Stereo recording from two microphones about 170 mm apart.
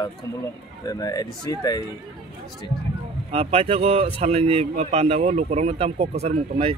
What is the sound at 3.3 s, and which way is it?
Speech, 35° right (ahead or behind).